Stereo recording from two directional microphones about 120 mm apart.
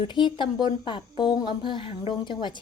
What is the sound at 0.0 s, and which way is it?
A woman's voice, 40° left (ahead or behind).